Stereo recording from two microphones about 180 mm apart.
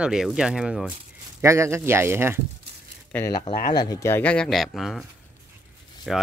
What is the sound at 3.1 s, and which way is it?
Speech, 15° left (ahead or behind).